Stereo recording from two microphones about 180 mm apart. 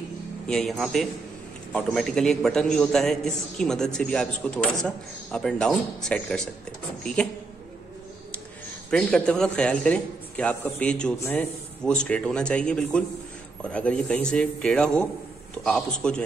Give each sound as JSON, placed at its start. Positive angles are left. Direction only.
{"t": 0.5, "sound": "a man's voice", "side_deg": 0}
{"t": 8.9, "sound": "a man's voice", "side_deg": 5}